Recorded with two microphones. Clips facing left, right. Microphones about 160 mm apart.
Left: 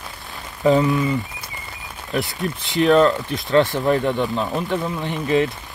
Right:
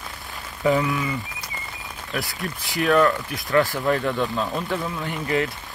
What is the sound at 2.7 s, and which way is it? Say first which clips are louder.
Speech: left 4 dB; 20° left (ahead or behind).